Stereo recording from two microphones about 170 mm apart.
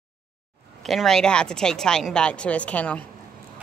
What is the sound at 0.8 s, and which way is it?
A woman's voice, centre (ahead or behind).